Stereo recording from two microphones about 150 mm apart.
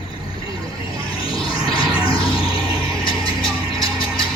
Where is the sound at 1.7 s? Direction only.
35° left (ahead or behind).